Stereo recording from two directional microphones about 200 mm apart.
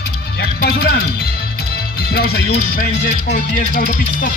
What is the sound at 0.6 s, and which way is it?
Music, 50° left (ahead or behind).